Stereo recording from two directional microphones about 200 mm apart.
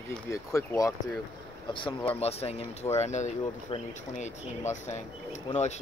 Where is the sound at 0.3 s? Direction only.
15° left (ahead or behind); by 3.3 s 35° left (ahead or behind).